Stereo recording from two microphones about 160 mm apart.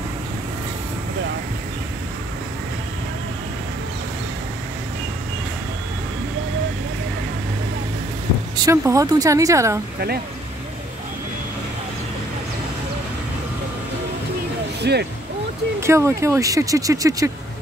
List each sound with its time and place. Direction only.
8.5 s speech: 20° right (ahead or behind)
14.8 s speech: 90° right
15.8 s speech: 15° right (ahead or behind)